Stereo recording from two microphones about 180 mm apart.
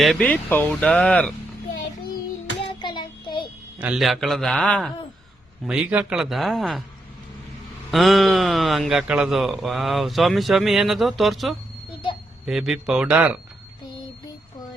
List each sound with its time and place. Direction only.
0.0 s speech: 5° left (ahead or behind)
2.7 s child singing: 25° left (ahead or behind)
3.8 s speech: 5° right (ahead or behind)
7.9 s speech: centre (ahead or behind)